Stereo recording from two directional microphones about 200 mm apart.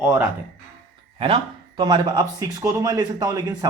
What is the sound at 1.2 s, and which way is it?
Speech, 30° right (ahead or behind).